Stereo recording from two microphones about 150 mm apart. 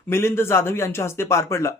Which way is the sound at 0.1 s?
15° left (ahead or behind).